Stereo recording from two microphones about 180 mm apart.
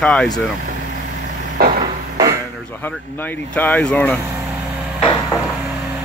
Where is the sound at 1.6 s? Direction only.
55° right (ahead or behind).